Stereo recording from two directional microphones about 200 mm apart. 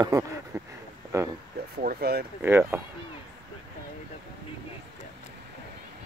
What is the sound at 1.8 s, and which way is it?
Speech, 50° right (ahead or behind).